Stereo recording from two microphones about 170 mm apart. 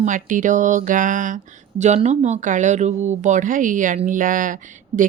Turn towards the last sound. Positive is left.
turn(degrees=-50)  # may be behind; listen again after turning